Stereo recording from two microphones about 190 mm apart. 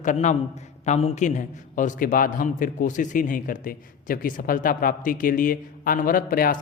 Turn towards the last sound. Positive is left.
turn(degrees=50)  # may be behind; listen again after turning